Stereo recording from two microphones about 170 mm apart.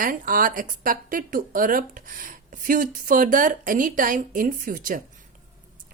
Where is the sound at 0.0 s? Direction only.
55° right (ahead or behind).